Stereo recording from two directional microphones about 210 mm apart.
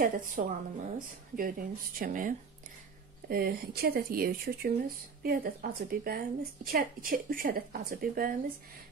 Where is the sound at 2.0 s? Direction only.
40° right (ahead or behind).